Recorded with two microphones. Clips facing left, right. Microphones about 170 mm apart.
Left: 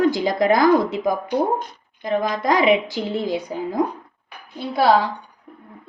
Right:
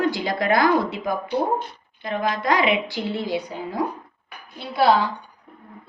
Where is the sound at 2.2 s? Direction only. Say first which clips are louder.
Left 1 dB; 45° left (ahead or behind).